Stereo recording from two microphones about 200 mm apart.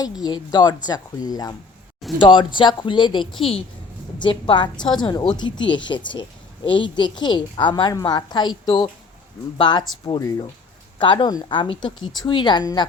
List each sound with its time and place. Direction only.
0.0 s a woman's voice: 20° left (ahead or behind)